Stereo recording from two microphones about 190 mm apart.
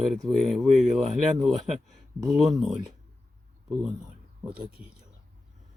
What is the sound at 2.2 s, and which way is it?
Speech, centre (ahead or behind).